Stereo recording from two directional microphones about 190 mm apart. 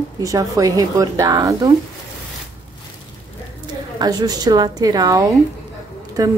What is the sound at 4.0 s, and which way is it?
A woman's voice, 20° right (ahead or behind).